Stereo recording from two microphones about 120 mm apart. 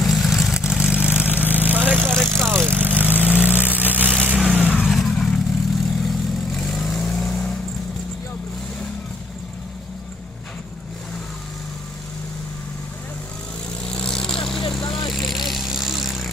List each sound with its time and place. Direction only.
0.0 s vehicle: centre (ahead or behind)
2.0 s vehicle: 5° left (ahead or behind)
2.6 s vehicle: 15° right (ahead or behind)
4.9 s vehicle: centre (ahead or behind)
13.8 s vehicle: 5° left (ahead or behind)
14.8 s vehicle: 40° left (ahead or behind)
15.1 s vehicle: centre (ahead or behind)